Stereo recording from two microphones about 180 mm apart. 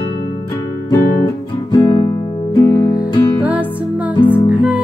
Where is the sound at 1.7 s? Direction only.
30° left (ahead or behind).